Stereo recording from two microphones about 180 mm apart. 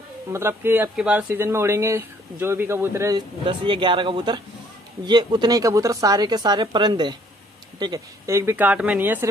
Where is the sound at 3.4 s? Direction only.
30° right (ahead or behind).